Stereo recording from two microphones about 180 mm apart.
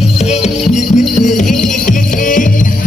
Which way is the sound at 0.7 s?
40° left (ahead or behind).